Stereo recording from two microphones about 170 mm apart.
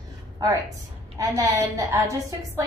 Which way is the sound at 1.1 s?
20° right (ahead or behind).